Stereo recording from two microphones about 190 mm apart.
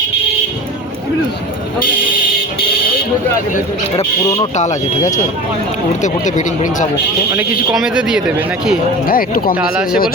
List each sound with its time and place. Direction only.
4.5 s speech: 40° left (ahead or behind)
7.3 s speech: 5° right (ahead or behind)
9.0 s speech: 50° left (ahead or behind)